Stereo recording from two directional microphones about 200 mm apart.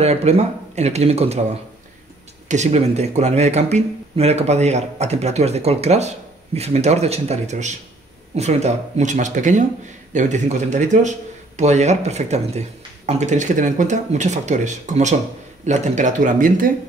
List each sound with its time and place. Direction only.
0.0 s speech: 30° right (ahead or behind)
2.4 s speech: 35° right (ahead or behind)